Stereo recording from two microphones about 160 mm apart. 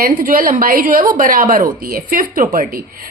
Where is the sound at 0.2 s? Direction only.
60° right (ahead or behind).